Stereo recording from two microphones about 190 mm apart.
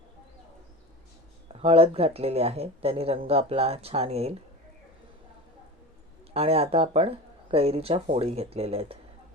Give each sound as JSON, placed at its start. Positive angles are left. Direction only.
{"t": 1.5, "sound": "speech", "side_deg": -30}
{"t": 6.3, "sound": "speech", "side_deg": -30}